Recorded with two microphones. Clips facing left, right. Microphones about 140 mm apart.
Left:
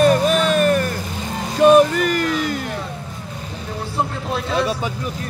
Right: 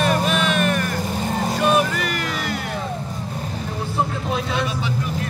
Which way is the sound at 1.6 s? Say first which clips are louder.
Left 10 dB; 45° left (ahead or behind).